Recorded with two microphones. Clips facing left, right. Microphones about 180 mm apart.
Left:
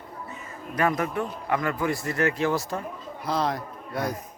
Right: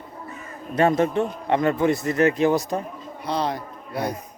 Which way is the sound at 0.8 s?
25° right (ahead or behind).